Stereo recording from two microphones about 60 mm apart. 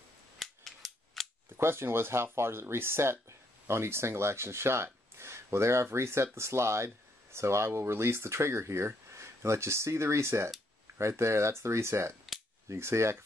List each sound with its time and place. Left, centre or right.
0.4 s cap gun: centre
1.6 s speech: right